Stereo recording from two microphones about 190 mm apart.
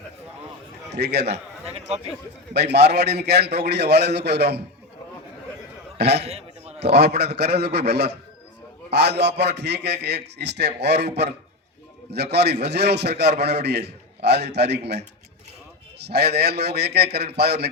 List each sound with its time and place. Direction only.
0.9 s a man's voice: 60° right (ahead or behind)
1.3 s a man's voice: 35° right (ahead or behind)
2.5 s a man's voice: 60° right (ahead or behind)
6.0 s a man's voice: 60° right (ahead or behind)
6.2 s a sound: 35° right (ahead or behind)
6.8 s a man's voice: 60° right (ahead or behind)
16.0 s a man's voice: 60° right (ahead or behind)